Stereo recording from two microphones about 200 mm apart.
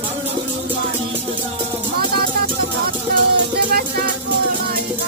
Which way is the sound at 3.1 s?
50° right (ahead or behind).